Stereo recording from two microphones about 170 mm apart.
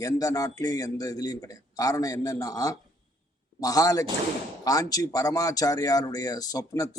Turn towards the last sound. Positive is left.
turn(degrees=20)  # may be behind; listen again after turning